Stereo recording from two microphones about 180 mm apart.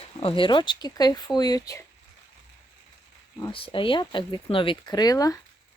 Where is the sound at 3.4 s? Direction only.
30° left (ahead or behind).